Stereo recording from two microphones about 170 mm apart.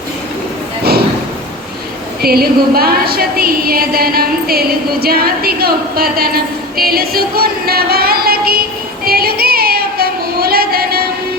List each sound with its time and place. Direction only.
2.2 s a woman's voice: 65° right (ahead or behind)
9.0 s female singing: 65° right (ahead or behind)